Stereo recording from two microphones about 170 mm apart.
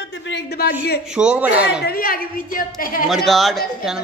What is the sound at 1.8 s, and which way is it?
A woman's voice, 60° left (ahead or behind).